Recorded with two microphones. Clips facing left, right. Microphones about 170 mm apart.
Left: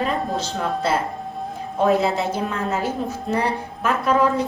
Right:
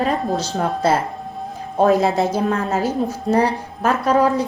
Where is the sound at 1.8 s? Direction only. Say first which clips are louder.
Right 3 dB; 40° right (ahead or behind).